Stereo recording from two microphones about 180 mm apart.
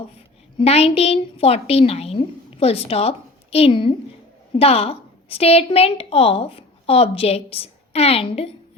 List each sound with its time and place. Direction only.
0.6 s a woman's voice: 35° left (ahead or behind)